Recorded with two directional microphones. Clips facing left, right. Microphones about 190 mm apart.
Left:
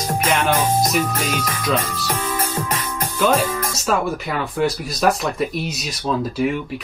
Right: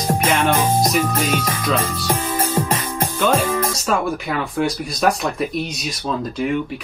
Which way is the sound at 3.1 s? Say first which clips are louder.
Even; 10° left (ahead or behind).